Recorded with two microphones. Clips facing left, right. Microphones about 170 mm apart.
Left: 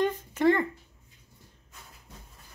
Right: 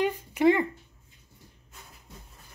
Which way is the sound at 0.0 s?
10° right (ahead or behind).